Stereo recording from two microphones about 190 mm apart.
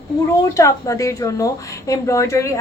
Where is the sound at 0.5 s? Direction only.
15° left (ahead or behind).